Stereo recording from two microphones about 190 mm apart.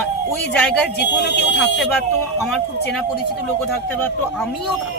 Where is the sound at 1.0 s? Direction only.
65° left (ahead or behind).